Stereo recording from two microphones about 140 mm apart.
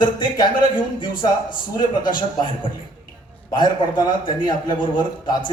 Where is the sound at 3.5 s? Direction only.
30° left (ahead or behind).